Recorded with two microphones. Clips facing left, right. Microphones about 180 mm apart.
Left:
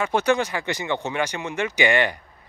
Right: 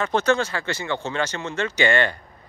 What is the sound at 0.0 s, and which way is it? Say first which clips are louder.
Speech: even; 15° left (ahead or behind).